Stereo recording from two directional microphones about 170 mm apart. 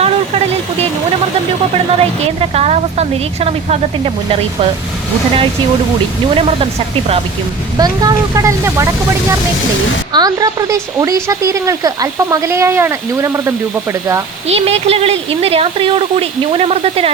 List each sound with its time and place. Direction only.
0.0 s vehicle: 35° right (ahead or behind)
2.4 s speech: 40° right (ahead or behind)
7.8 s speech: 20° right (ahead or behind)
10.1 s speech: 25° right (ahead or behind)
14.4 s speech: 35° right (ahead or behind)